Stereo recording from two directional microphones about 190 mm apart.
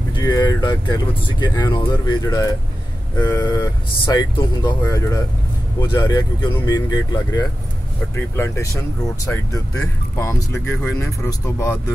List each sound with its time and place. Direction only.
0.1 s speech: 20° left (ahead or behind)